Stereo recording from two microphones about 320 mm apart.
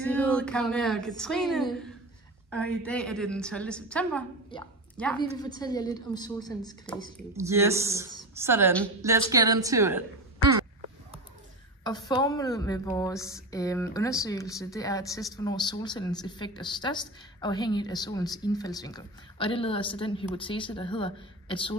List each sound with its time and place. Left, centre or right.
0.0 s speech: centre
4.5 s a woman's voice: centre
4.9 s a woman's voice: centre
7.3 s speech: centre
11.8 s a woman's voice: centre